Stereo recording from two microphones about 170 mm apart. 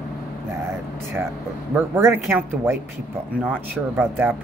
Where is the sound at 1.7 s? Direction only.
15° right (ahead or behind).